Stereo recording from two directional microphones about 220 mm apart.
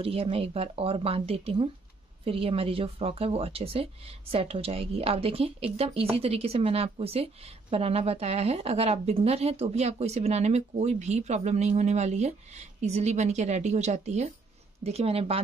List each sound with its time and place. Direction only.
0.0 s a woman's voice: 25° right (ahead or behind)